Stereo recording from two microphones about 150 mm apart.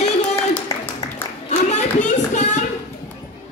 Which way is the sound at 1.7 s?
50° left (ahead or behind).